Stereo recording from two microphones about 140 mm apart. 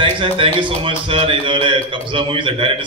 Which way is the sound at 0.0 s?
35° right (ahead or behind).